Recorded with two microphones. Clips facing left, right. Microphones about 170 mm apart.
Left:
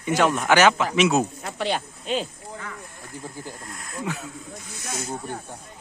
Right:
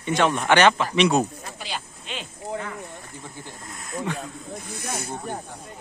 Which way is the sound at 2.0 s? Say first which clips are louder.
Left 10 dB; 40° left (ahead or behind).